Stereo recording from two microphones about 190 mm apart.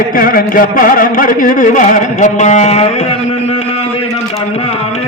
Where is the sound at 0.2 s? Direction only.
50° left (ahead or behind).